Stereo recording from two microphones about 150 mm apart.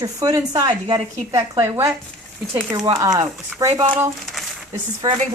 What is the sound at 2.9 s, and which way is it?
Speech, 25° right (ahead or behind).